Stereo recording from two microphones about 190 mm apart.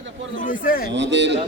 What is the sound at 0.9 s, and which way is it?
Speech, 70° right (ahead or behind).